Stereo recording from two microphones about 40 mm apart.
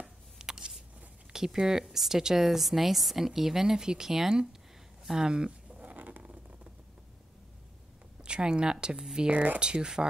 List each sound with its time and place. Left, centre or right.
0.0 s a sound: centre
1.3 s speech: centre
5.7 s a sound: right
5.9 s vehicle: right
8.2 s speech: right
9.3 s speech: right
9.6 s speech: right